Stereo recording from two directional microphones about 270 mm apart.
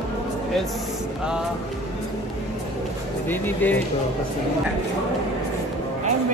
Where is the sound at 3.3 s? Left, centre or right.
Centre.